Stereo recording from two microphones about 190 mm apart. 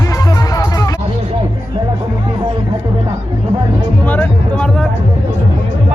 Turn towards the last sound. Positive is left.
turn(degrees=5)  # may be behind; listen again after turning